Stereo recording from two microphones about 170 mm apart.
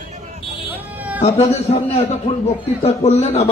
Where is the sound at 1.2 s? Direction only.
40° left (ahead or behind).